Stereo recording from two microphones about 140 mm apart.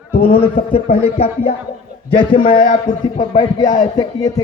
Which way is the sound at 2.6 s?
70° left (ahead or behind).